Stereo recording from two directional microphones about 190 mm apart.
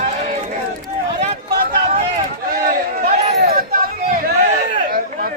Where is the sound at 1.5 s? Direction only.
50° right (ahead or behind).